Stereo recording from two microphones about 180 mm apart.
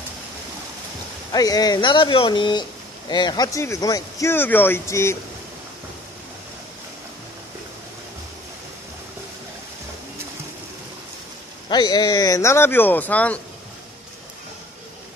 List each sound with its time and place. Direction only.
1.3 s speech: 20° left (ahead or behind)
11.7 s speech: 25° left (ahead or behind); by 13.4 s 10° left (ahead or behind)